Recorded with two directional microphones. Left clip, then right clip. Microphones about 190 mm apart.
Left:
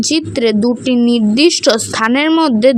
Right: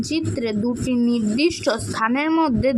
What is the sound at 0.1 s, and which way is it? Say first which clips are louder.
Speech: left 9 dB; 40° left (ahead or behind).